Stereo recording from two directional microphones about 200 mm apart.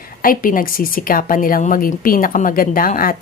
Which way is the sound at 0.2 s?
45° left (ahead or behind).